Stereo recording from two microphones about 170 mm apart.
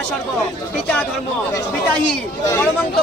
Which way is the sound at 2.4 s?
15° left (ahead or behind).